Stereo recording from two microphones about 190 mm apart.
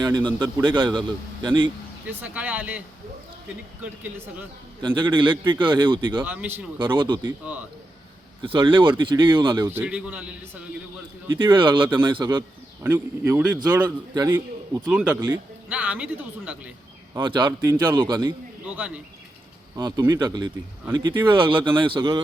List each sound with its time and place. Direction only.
0.0 s a man's voice: 25° right (ahead or behind)
2.0 s speech: 10° right (ahead or behind)
4.8 s a man's voice: 25° right (ahead or behind)
6.2 s speech: 10° right (ahead or behind)
6.7 s a man's voice: 25° right (ahead or behind)
7.2 s speech: 15° right (ahead or behind)
8.4 s a man's voice: 25° right (ahead or behind)
9.6 s speech: 10° right (ahead or behind)
11.5 s a man's voice: 25° right (ahead or behind)
12.8 s a man's voice: 10° right (ahead or behind)
17.2 s a man's voice: 25° right (ahead or behind)
18.8 s a man's voice: 5° right (ahead or behind); by 22.2 s 25° right (ahead or behind)